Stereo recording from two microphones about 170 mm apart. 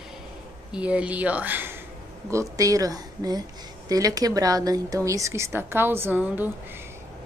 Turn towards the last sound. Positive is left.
turn(degrees=-10)  # may be behind; listen again after turning